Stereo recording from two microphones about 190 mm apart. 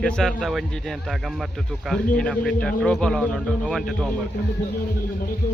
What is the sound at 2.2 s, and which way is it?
Speech, 5° left (ahead or behind).